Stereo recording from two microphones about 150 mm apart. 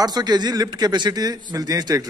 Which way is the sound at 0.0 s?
25° right (ahead or behind).